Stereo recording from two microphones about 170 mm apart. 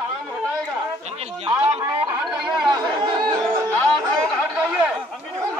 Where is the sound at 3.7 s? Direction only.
5° left (ahead or behind).